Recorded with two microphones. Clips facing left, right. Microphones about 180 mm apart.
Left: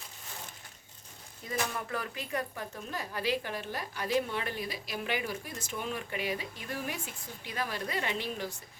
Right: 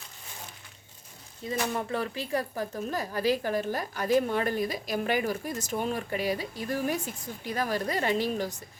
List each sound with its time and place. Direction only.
1.5 s speech: 30° right (ahead or behind)